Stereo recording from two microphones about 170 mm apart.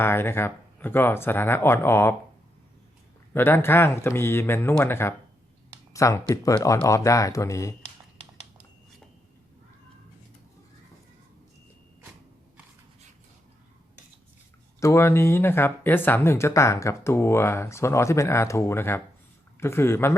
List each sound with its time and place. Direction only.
0.0 s speech: 15° left (ahead or behind)
3.3 s speech: 15° left (ahead or behind)
14.8 s speech: 15° left (ahead or behind)